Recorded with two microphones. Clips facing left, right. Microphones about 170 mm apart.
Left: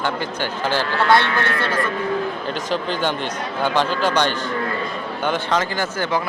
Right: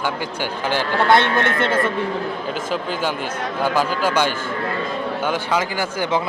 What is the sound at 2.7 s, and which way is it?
Speech, 5° right (ahead or behind).